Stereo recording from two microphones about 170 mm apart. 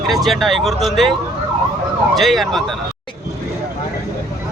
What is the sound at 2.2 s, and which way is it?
Speech, centre (ahead or behind).